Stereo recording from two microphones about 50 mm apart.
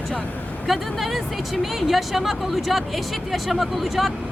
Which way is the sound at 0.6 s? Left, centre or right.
Centre.